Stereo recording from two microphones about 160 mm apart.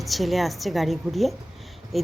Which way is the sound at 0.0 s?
Centre (ahead or behind).